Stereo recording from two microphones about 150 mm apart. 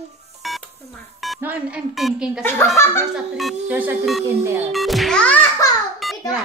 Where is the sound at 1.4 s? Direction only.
10° right (ahead or behind).